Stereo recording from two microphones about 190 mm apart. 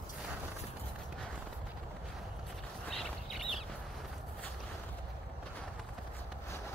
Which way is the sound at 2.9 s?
Centre (ahead or behind).